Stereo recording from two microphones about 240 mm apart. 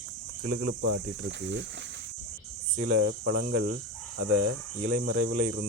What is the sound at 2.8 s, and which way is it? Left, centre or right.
Cricket, right.